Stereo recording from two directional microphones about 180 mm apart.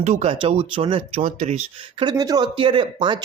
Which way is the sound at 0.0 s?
40° right (ahead or behind).